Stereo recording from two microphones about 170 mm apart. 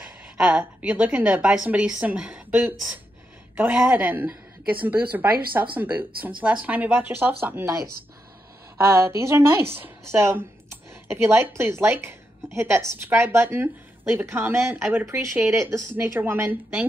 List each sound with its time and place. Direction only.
0.4 s a woman's voice: 10° right (ahead or behind)